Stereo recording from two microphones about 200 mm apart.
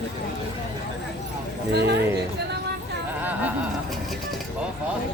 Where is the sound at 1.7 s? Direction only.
60° right (ahead or behind).